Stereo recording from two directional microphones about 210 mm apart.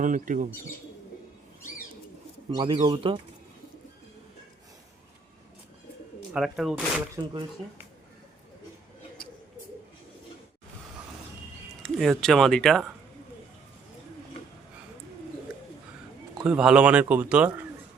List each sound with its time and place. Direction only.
0.0 s speech: 40° right (ahead or behind)
2.5 s speech: 20° right (ahead or behind)
6.3 s speech: 5° right (ahead or behind)
11.8 s speech: centre (ahead or behind)
16.4 s speech: 5° right (ahead or behind)